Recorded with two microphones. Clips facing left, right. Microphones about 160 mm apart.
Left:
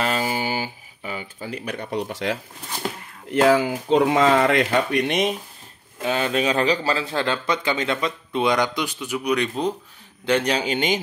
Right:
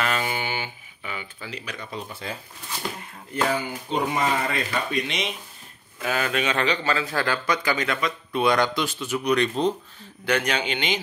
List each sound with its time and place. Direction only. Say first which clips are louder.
0.0 s a sound: left 3 dB; 30° left (ahead or behind)
1.5 s speech: left 8 dB; 55° left (ahead or behind); by 4.6 s 85° left
4.6 s speech: left 6 dB; 60° left (ahead or behind)
6.0 s a man's voice: left 3 dB; 30° left (ahead or behind); by 9.8 s 10° left (ahead or behind)
10.2 s speech: left 3 dB; 30° left (ahead or behind)